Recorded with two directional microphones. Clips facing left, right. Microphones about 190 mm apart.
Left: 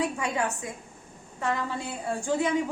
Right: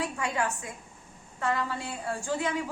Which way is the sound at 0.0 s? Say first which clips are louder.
Left 2 dB; 15° left (ahead or behind).